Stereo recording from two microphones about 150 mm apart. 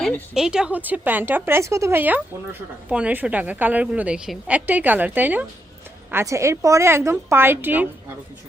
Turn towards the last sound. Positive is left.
turn(degrees=-10)  # may be behind; listen again after turning